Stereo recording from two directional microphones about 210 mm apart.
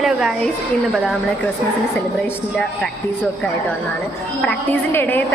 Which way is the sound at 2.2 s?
5° left (ahead or behind).